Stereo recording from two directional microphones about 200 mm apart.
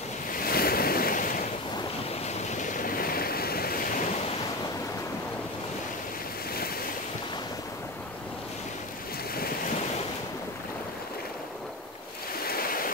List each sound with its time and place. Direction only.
0.4 s waves: 50° left (ahead or behind)
2.5 s waves: 40° left (ahead or behind)
12.4 s waves: 45° left (ahead or behind)